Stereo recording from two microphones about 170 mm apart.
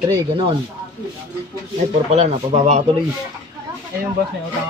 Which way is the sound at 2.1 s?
40° right (ahead or behind).